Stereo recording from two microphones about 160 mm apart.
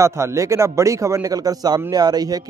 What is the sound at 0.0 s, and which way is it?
A man's voice, 15° right (ahead or behind).